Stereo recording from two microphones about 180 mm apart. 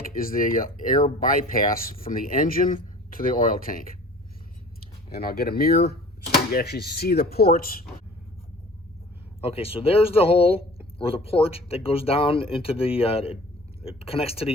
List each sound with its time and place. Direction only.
0.2 s speech: 50° left (ahead or behind)
5.1 s speech: 55° left (ahead or behind)
9.4 s speech: 30° left (ahead or behind)